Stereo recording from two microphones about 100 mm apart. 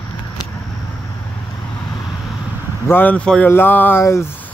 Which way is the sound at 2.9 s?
15° left (ahead or behind).